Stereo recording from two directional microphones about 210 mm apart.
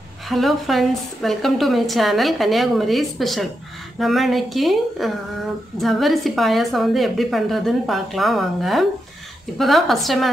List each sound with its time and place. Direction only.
0.3 s a woman's voice: centre (ahead or behind)